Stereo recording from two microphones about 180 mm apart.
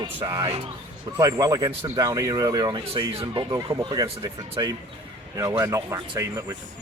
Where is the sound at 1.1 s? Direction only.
20° right (ahead or behind).